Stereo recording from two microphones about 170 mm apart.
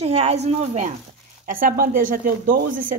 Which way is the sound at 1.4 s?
55° right (ahead or behind).